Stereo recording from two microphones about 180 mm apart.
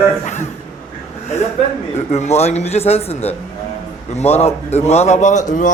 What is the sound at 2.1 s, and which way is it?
A man's voice, 35° left (ahead or behind).